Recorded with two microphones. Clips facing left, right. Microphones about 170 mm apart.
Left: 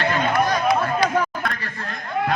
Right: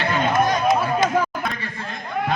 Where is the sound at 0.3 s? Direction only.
20° right (ahead or behind).